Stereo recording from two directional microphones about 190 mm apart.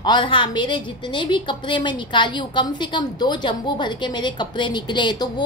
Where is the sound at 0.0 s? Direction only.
25° left (ahead or behind).